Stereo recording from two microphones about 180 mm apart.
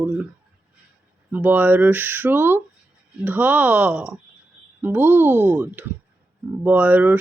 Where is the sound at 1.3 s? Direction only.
10° right (ahead or behind).